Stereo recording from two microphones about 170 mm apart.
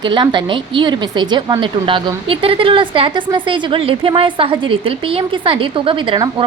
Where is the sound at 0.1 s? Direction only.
25° right (ahead or behind).